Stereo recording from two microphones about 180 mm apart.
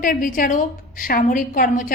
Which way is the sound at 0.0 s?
50° left (ahead or behind).